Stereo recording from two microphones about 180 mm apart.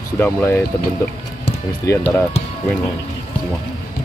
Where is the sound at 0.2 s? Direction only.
15° left (ahead or behind).